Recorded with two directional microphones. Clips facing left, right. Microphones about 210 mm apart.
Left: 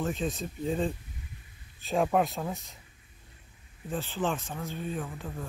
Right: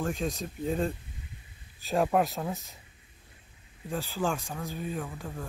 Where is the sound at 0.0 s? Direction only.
Centre (ahead or behind).